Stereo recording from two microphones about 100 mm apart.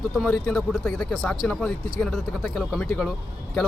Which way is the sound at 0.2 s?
5° left (ahead or behind).